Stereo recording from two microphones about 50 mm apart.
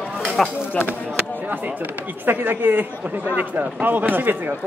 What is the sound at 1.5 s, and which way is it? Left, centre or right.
Speech, right.